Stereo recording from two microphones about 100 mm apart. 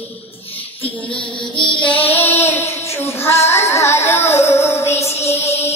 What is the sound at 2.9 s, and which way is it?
Music, 25° left (ahead or behind).